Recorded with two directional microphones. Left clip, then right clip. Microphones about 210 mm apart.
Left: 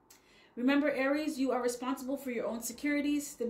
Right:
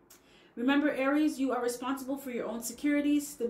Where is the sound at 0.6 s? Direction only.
35° left (ahead or behind).